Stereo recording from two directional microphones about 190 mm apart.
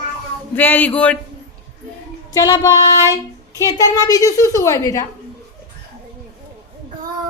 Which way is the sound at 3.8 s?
20° left (ahead or behind).